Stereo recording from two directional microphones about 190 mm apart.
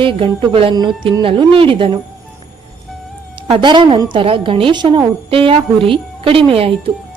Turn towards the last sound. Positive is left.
turn(degrees=-30)  # may be behind; listen again after turning